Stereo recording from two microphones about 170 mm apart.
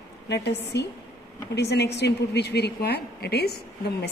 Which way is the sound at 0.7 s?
90° left.